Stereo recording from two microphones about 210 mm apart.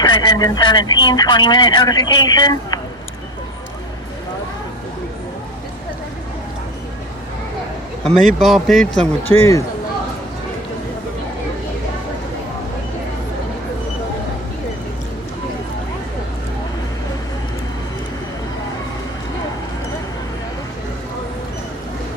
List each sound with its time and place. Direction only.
0.0 s speech: 20° left (ahead or behind)
8.0 s speech: 5° left (ahead or behind)
9.4 s speech: 15° left (ahead or behind)